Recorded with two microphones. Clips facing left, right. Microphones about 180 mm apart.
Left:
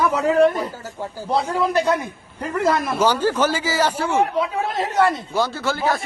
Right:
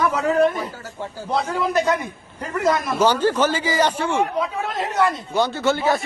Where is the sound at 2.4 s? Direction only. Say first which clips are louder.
Left 1 dB; 10° left (ahead or behind).